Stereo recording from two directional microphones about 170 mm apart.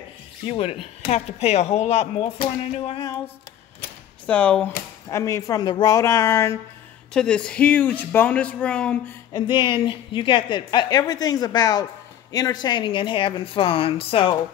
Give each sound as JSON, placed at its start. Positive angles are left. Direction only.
{"t": 0.5, "sound": "speech", "side_deg": 35}
{"t": 4.3, "sound": "speech", "side_deg": 5}
{"t": 5.0, "sound": "speech", "side_deg": 20}
{"t": 7.2, "sound": "speech", "side_deg": 5}
{"t": 9.3, "sound": "a woman's voice", "side_deg": 30}